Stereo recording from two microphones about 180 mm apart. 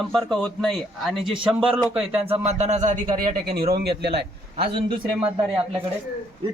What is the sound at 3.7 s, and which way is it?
Speech, 65° right (ahead or behind).